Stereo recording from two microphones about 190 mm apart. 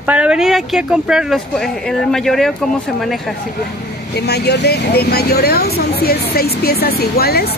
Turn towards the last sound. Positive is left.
turn(degrees=55)  # may be behind; listen again after turning